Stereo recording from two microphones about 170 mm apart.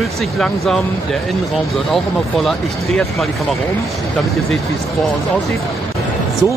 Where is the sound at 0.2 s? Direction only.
5° left (ahead or behind).